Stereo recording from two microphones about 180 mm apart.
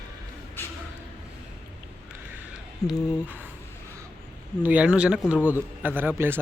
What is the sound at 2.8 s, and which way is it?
Speech, 20° left (ahead or behind).